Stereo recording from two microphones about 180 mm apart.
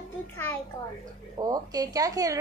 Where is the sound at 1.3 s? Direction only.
20° right (ahead or behind).